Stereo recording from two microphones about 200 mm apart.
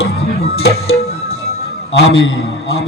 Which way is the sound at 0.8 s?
30° left (ahead or behind).